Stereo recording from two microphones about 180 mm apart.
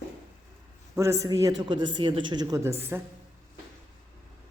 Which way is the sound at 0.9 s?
15° right (ahead or behind).